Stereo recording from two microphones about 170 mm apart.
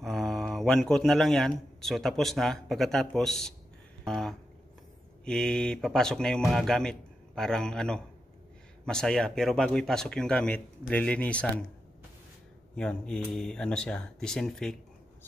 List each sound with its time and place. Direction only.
0.0 s a man's voice: centre (ahead or behind)
4.0 s a sound: 5° left (ahead or behind)
5.2 s speech: 5° left (ahead or behind)
12.7 s speech: 5° left (ahead or behind)